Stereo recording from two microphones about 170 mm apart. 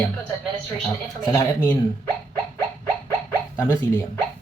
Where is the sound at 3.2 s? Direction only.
15° left (ahead or behind).